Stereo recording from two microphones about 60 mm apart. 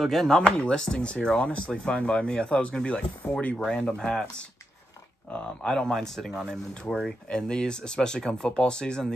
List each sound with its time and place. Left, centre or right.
0.0 s speech: centre
0.4 s speech: centre
5.3 s speech: centre